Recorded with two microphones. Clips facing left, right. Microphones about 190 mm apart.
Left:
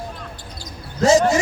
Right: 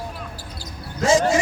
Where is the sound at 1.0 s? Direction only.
40° left (ahead or behind).